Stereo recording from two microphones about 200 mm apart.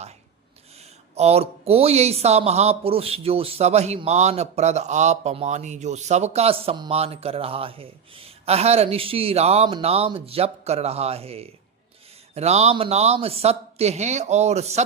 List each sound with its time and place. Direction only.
1.1 s speech: 30° right (ahead or behind)